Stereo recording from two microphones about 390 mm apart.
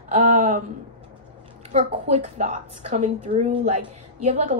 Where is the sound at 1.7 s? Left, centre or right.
Centre.